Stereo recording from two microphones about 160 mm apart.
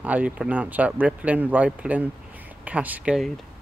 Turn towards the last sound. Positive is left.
turn(degrees=-5)  # may be behind; listen again after turning